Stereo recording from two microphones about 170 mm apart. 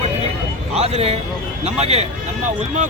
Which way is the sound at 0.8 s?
40° right (ahead or behind).